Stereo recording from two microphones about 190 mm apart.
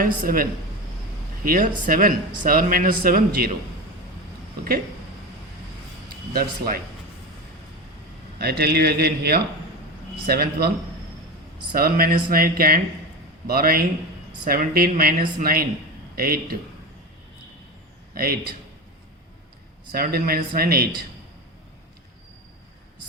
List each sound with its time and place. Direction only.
0.0 s a man's voice: 50° right (ahead or behind)
1.5 s a man's voice: 50° right (ahead or behind)
6.3 s a man's voice: 50° right (ahead or behind)
8.4 s speech: 55° right (ahead or behind)
11.7 s a man's voice: 50° right (ahead or behind)
18.1 s a man's voice: 50° right (ahead or behind)
19.9 s a man's voice: 55° right (ahead or behind)